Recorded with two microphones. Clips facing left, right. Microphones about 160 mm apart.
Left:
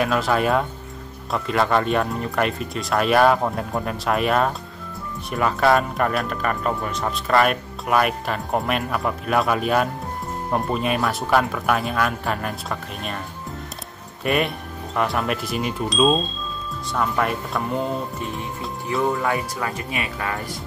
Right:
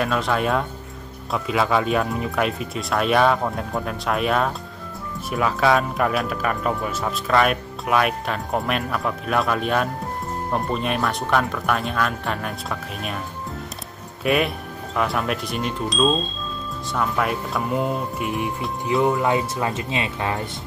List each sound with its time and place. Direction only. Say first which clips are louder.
0.0 s speech: left 2 dB; centre (ahead or behind)
14.2 s speech: right 1 dB; centre (ahead or behind)
18.2 s speech: right 4 dB; 15° right (ahead or behind)